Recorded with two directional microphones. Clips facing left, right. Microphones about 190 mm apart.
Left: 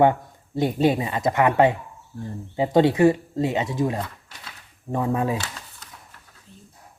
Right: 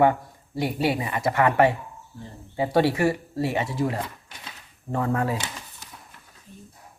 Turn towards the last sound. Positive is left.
turn(degrees=-15)  # may be behind; listen again after turning